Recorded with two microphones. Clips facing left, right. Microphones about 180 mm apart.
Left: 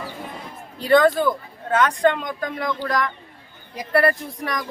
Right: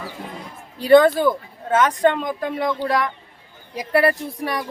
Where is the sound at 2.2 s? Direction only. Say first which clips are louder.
Right 3 dB; 25° right (ahead or behind).